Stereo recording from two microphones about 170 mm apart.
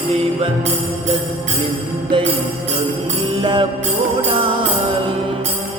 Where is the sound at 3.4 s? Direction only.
25° right (ahead or behind).